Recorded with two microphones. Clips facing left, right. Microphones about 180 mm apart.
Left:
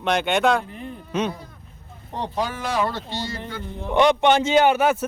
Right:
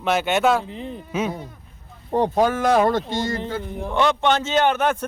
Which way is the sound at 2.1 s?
50° right (ahead or behind).